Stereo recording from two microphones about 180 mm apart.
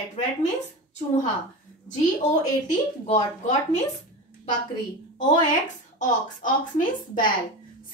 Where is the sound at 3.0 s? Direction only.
35° left (ahead or behind).